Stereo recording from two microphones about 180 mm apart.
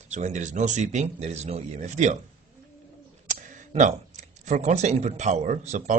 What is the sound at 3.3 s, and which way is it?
Speech, 45° right (ahead or behind).